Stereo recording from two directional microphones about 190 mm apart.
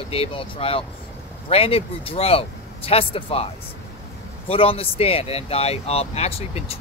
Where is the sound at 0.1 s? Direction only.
30° left (ahead or behind).